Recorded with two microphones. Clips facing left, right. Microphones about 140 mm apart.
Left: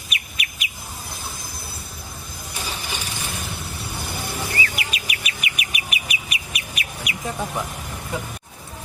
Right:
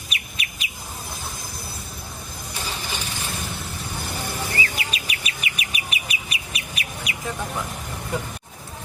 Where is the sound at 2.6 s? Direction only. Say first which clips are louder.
Even; 15° left (ahead or behind).